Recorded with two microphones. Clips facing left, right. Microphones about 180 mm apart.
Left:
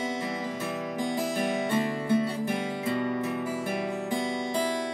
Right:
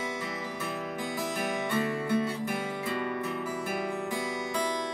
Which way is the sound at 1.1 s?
30° left (ahead or behind).